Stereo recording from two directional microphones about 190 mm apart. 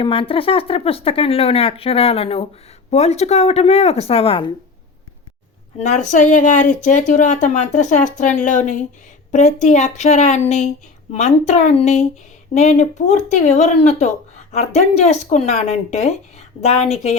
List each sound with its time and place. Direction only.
0.0 s speech: 30° left (ahead or behind)
5.8 s speech: 35° left (ahead or behind)